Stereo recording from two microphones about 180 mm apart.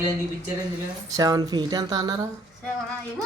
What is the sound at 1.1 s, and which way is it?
Speech, 20° right (ahead or behind).